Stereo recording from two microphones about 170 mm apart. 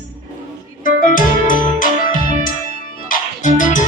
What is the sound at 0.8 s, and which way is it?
Music, 55° left (ahead or behind).